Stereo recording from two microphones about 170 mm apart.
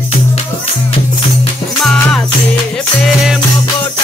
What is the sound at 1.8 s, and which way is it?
Music, 5° left (ahead or behind).